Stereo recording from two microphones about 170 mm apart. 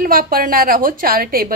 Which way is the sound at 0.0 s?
55° right (ahead or behind).